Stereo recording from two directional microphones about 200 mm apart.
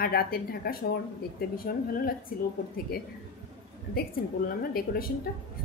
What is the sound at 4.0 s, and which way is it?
A woman's voice, 50° left (ahead or behind).